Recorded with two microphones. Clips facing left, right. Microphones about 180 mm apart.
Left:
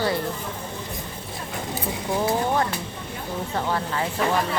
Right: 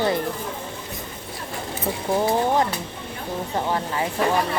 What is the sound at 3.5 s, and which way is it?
Speech, 15° right (ahead or behind).